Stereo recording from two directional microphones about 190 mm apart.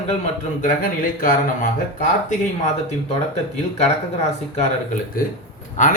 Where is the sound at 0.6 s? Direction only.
45° left (ahead or behind).